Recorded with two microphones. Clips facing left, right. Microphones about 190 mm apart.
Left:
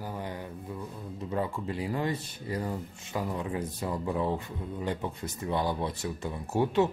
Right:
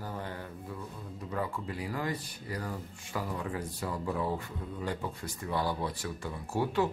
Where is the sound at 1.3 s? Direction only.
25° left (ahead or behind).